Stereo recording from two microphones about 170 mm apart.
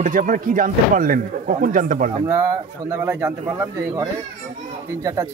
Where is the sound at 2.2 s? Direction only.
15° right (ahead or behind).